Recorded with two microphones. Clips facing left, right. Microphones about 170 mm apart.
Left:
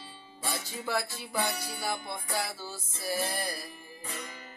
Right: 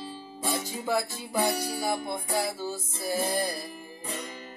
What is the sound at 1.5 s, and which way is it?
Music, 40° right (ahead or behind).